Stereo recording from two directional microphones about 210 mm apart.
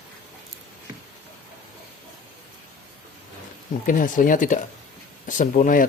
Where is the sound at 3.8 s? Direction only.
40° left (ahead or behind).